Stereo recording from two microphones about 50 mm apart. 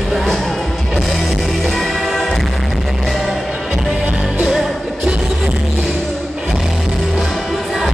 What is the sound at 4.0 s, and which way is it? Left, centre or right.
Music, right.